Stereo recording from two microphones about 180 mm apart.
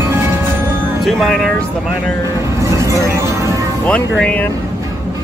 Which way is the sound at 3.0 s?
15° right (ahead or behind).